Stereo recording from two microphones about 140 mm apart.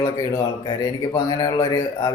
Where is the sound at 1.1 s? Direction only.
25° left (ahead or behind).